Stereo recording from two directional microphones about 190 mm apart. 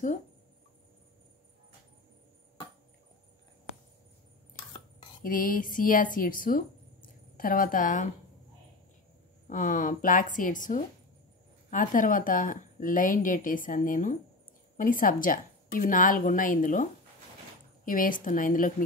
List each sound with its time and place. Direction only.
5.2 s a woman's voice: 45° left (ahead or behind)
9.5 s a woman's voice: 40° left (ahead or behind)